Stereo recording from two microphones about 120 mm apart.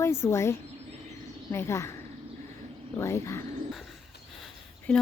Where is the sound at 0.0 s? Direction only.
20° left (ahead or behind).